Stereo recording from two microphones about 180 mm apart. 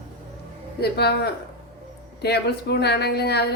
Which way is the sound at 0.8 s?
65° left (ahead or behind).